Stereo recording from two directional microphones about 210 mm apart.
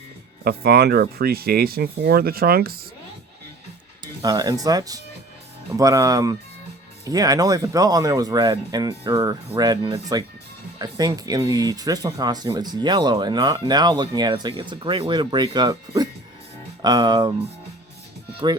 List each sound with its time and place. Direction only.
0.4 s speech: 50° right (ahead or behind)
4.0 s speech: 15° right (ahead or behind)